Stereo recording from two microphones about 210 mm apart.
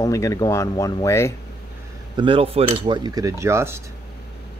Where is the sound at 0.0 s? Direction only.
15° left (ahead or behind).